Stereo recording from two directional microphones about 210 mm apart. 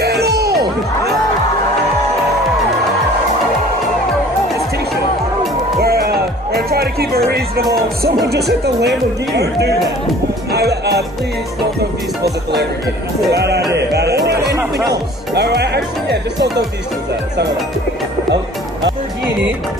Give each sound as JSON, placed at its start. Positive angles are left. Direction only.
{"t": 0.0, "sound": "music", "side_deg": -50}
{"t": 5.8, "sound": "music", "side_deg": -50}
{"t": 7.7, "sound": "speech", "side_deg": -50}
{"t": 10.5, "sound": "music", "side_deg": -50}
{"t": 13.3, "sound": "speech", "side_deg": -50}